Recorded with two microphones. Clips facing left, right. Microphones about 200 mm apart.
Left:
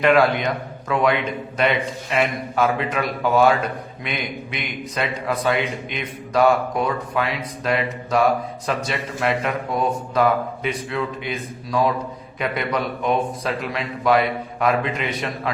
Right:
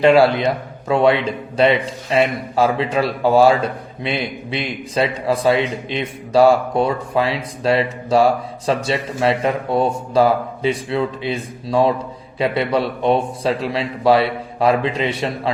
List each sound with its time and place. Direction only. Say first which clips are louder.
0.0 s a man's voice: right 4 dB; 30° right (ahead or behind)